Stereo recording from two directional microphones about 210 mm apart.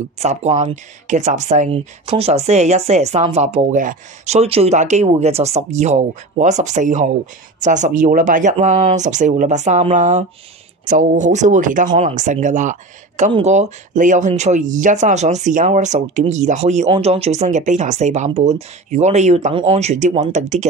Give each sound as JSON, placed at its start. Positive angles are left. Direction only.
{"t": 0.2, "sound": "speech", "side_deg": -30}